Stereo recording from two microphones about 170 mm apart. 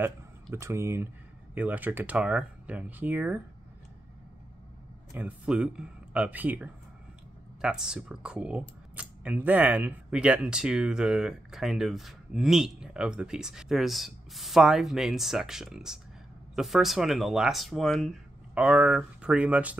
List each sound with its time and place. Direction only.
0.0 s speech: 15° right (ahead or behind)
5.1 s speech: 10° right (ahead or behind)